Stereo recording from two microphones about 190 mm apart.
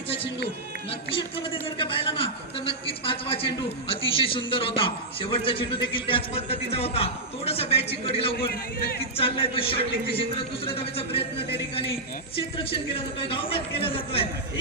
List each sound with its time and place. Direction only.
0.9 s a man's voice: 30° left (ahead or behind)